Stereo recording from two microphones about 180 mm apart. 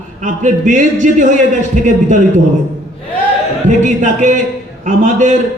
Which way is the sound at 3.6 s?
40° right (ahead or behind).